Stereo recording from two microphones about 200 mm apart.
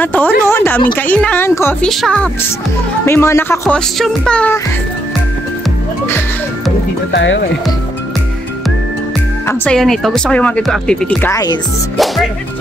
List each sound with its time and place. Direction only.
0.0 s speech: 10° left (ahead or behind)
0.5 s a sound: 10° left (ahead or behind)
0.9 s speech: 5° left (ahead or behind)
3.6 s speech: centre (ahead or behind)
7.1 s speech: 60° left (ahead or behind)
9.5 s speech: 5° left (ahead or behind)